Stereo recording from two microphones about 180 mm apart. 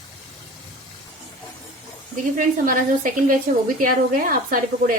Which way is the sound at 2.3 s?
50° right (ahead or behind).